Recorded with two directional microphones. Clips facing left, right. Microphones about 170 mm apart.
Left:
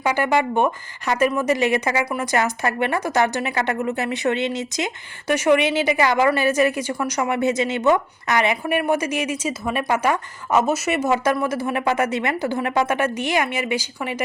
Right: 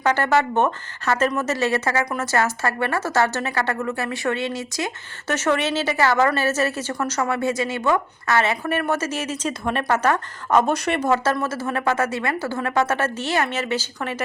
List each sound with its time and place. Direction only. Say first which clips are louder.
0.0 s a woman's voice: even; 10° left (ahead or behind)